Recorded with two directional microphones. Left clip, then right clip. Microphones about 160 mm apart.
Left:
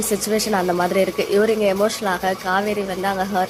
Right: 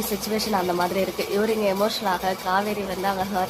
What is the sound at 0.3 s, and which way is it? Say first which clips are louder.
A woman's voice: left 3 dB; 20° left (ahead or behind).